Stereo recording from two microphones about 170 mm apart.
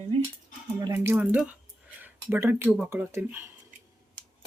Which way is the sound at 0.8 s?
15° right (ahead or behind).